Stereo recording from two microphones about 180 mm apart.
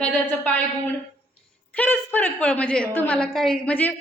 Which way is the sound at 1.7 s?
10° left (ahead or behind).